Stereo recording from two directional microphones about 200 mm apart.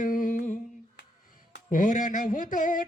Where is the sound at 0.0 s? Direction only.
40° left (ahead or behind).